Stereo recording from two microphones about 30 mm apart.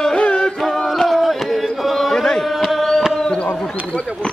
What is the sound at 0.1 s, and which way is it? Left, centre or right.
Music, left.